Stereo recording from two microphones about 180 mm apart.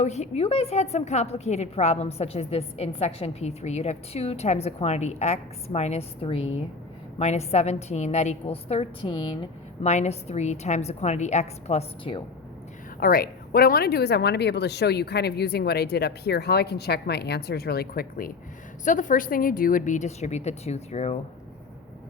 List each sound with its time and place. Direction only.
0.0 s a woman's voice: 40° left (ahead or behind)
13.0 s speech: 55° left (ahead or behind)
18.9 s a woman's voice: 45° left (ahead or behind)